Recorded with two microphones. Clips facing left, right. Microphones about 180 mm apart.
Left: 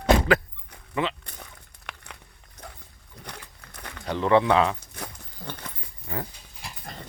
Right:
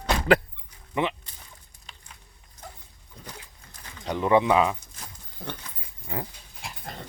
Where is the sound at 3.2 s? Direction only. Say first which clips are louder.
Left 2 dB; 65° left (ahead or behind).